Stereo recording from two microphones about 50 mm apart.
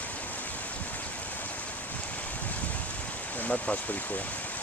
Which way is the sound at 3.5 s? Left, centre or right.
Left.